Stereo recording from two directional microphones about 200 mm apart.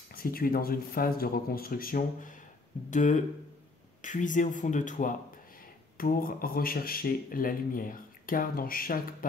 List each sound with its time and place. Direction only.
0.1 s speech: 45° left (ahead or behind)